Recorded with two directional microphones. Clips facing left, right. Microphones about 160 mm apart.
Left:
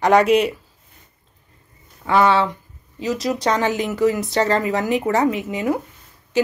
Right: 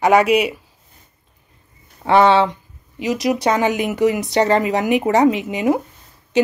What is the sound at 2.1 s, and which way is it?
Speech, 25° right (ahead or behind).